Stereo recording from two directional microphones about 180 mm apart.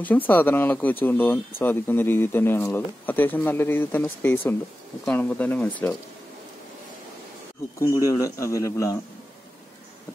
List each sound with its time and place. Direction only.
0.0 s speech: 10° left (ahead or behind)
8.2 s speech: 15° left (ahead or behind)